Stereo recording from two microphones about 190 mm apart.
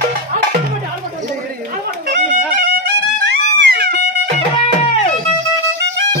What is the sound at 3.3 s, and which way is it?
Music, 60° right (ahead or behind).